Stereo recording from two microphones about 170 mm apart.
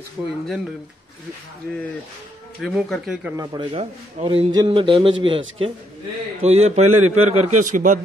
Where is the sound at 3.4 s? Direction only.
25° right (ahead or behind); by 8.0 s 50° right (ahead or behind).